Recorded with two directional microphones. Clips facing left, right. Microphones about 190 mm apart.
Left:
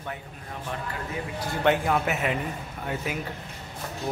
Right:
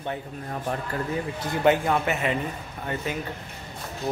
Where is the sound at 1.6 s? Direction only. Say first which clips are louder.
Right 2 dB; centre (ahead or behind).